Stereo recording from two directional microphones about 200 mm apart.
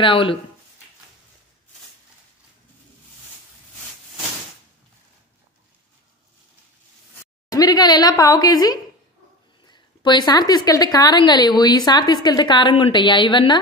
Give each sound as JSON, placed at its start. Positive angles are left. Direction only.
{"t": 0.0, "sound": "a woman's voice", "side_deg": 25}
{"t": 7.5, "sound": "a woman's voice", "side_deg": 20}